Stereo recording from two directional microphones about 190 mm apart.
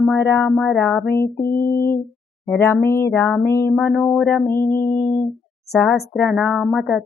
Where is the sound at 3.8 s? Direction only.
Centre (ahead or behind).